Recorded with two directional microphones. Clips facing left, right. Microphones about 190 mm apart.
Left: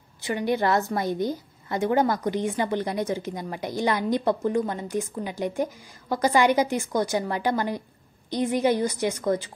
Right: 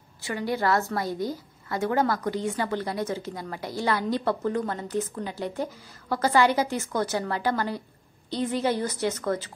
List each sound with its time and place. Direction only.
0.2 s a woman's voice: 20° left (ahead or behind)